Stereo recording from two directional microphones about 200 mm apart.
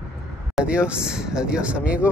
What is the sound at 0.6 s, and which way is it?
Speech, 5° right (ahead or behind).